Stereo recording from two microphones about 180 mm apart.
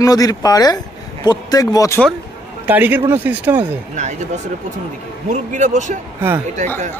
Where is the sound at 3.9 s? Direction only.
40° right (ahead or behind).